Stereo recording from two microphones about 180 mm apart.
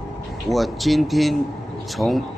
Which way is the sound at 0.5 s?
Centre (ahead or behind).